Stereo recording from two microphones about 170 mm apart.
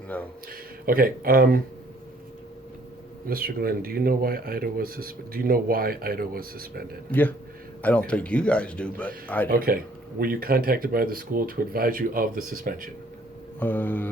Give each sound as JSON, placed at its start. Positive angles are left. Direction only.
{"t": 0.9, "sound": "speech", "side_deg": -60}
{"t": 3.2, "sound": "speech", "side_deg": -60}
{"t": 7.1, "sound": "speech", "side_deg": 10}
{"t": 9.5, "sound": "speech", "side_deg": -60}
{"t": 13.6, "sound": "speech", "side_deg": 10}